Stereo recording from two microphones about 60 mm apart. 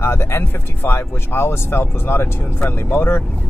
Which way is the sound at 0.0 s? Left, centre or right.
Left.